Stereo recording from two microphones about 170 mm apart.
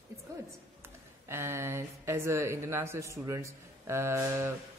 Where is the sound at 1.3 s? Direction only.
15° right (ahead or behind).